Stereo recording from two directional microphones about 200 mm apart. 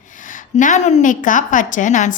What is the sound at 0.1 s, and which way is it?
A woman's voice, 40° left (ahead or behind).